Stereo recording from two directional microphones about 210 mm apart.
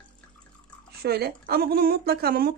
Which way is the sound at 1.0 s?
50° right (ahead or behind).